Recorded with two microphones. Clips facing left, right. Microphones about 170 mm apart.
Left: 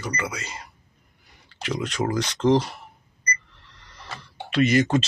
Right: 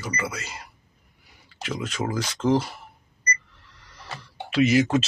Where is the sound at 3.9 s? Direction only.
5° right (ahead or behind).